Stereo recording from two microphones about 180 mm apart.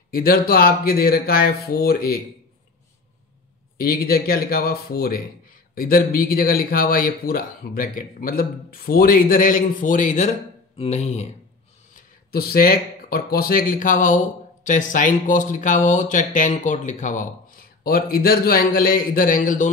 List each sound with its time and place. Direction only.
0.1 s speech: 55° left (ahead or behind)
3.7 s speech: 55° left (ahead or behind); by 11.2 s 35° left (ahead or behind)
12.3 s speech: 55° left (ahead or behind)